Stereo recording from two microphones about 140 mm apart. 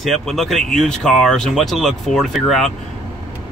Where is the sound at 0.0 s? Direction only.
Centre (ahead or behind).